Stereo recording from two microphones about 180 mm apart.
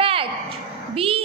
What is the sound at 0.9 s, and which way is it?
Speech, 30° right (ahead or behind).